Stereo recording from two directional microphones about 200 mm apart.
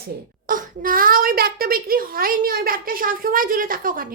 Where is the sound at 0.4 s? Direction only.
45° right (ahead or behind).